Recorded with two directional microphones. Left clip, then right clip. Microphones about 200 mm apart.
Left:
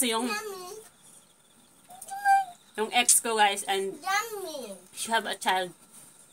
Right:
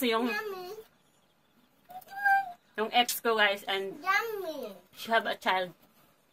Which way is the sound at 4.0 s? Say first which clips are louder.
Even; 5° right (ahead or behind).